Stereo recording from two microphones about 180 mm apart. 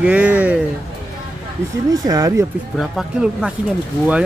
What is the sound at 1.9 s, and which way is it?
Speech, 20° right (ahead or behind).